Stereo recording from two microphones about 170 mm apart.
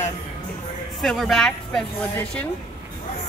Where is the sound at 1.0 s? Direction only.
Centre (ahead or behind).